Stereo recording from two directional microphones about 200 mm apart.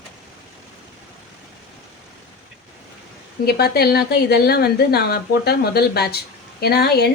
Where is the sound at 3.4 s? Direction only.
50° left (ahead or behind).